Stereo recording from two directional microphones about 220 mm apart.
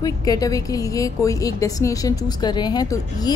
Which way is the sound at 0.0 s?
15° left (ahead or behind).